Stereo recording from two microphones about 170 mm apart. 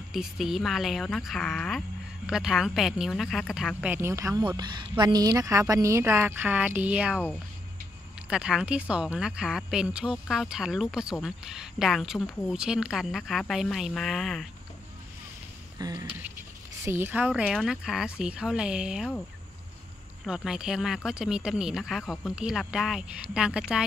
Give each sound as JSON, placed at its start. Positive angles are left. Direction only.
{"t": 0.1, "sound": "a woman's voice", "side_deg": 0}
{"t": 8.3, "sound": "a woman's voice", "side_deg": -5}
{"t": 15.8, "sound": "a woman's voice", "side_deg": -20}
{"t": 20.2, "sound": "a woman's voice", "side_deg": -5}